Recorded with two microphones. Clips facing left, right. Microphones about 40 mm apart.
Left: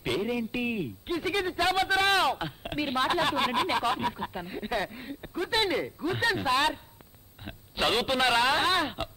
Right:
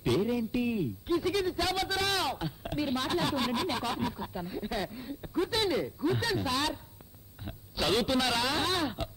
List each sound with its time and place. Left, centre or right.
0.0 s a man's voice: left